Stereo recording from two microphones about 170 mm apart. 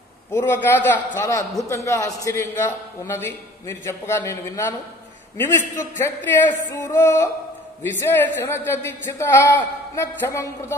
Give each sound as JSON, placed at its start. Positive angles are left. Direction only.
{"t": 0.3, "sound": "a man's voice", "side_deg": 15}
{"t": 5.8, "sound": "a man's voice", "side_deg": 15}